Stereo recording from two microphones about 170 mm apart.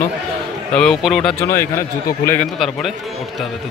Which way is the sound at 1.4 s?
15° left (ahead or behind).